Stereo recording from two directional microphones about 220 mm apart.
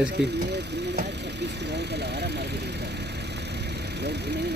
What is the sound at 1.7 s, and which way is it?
Vehicle, 50° right (ahead or behind).